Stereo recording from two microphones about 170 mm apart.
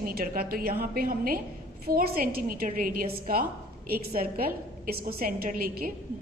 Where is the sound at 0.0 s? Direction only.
60° right (ahead or behind).